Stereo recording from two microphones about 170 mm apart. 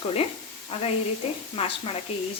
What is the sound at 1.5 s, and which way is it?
Speech, 35° left (ahead or behind).